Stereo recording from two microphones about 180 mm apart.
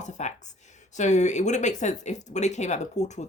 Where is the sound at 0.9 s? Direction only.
40° left (ahead or behind).